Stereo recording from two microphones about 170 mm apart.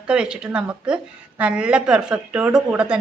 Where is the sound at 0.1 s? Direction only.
5° right (ahead or behind).